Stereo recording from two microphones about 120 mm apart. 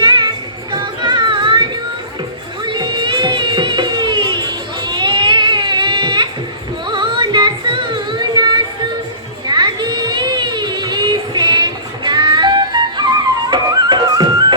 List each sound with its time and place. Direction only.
0.0 s music: 45° right (ahead or behind)
4.8 s a sound: 40° right (ahead or behind)
6.8 s music: 40° right (ahead or behind)
9.5 s child singing: 40° right (ahead or behind)